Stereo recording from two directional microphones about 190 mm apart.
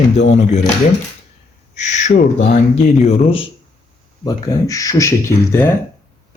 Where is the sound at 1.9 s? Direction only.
40° left (ahead or behind).